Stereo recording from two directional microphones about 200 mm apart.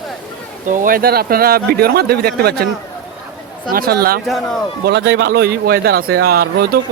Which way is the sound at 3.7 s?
50° right (ahead or behind).